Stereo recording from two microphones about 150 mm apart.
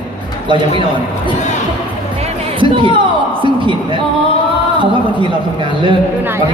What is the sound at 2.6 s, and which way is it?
Speech, 35° right (ahead or behind).